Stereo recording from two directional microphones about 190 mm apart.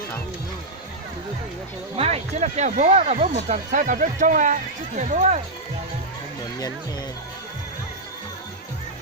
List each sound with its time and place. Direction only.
2.0 s speech: 30° right (ahead or behind)